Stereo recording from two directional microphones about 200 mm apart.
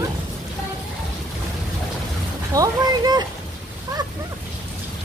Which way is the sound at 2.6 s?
20° right (ahead or behind).